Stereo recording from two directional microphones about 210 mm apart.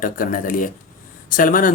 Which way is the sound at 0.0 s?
40° left (ahead or behind).